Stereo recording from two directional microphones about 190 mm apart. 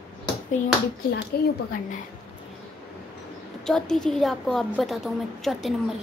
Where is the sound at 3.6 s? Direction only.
5° left (ahead or behind).